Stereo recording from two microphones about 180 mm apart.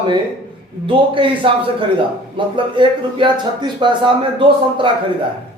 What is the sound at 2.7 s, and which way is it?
A man's voice, 25° right (ahead or behind).